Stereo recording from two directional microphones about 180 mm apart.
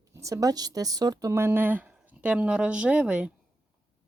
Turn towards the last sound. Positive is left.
turn(degrees=-5)  # may be behind; listen again after turning